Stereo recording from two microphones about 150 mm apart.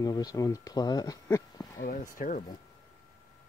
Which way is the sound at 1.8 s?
65° left (ahead or behind).